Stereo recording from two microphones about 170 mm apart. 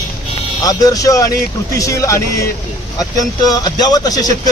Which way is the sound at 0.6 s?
20° left (ahead or behind).